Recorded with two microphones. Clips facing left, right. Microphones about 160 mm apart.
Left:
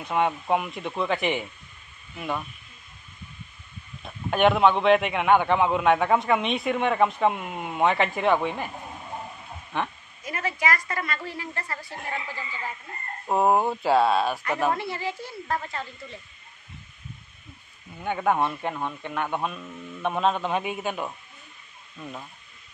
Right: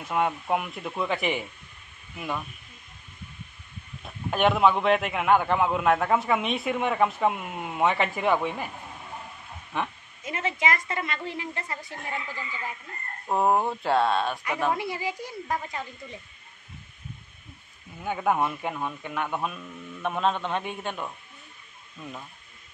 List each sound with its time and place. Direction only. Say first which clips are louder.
0.0 s a man's voice: left 2 dB; centre (ahead or behind)
4.0 s a man's voice: left 3 dB; centre (ahead or behind)
9.7 s a man's voice: left 1 dB; 5° right (ahead or behind)
10.2 s a woman's voice: even; 20° right (ahead or behind)
13.3 s a man's voice: left 2 dB; 5° left (ahead or behind)
14.8 s a woman's voice: even; 10° right (ahead or behind)
18.0 s a man's voice: left 1 dB; 5° right (ahead or behind)